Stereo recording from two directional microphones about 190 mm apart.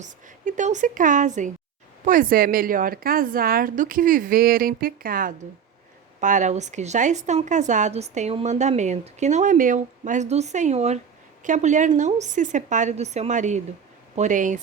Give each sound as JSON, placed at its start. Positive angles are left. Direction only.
{"t": 0.0, "sound": "a woman's voice", "side_deg": -40}